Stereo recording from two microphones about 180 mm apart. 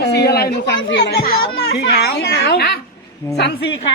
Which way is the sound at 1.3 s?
60° left (ahead or behind).